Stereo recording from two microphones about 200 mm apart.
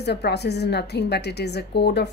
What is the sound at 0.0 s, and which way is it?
A woman's voice, 55° left (ahead or behind).